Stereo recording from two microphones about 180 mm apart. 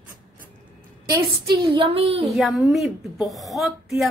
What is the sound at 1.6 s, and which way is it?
Speech, 30° right (ahead or behind).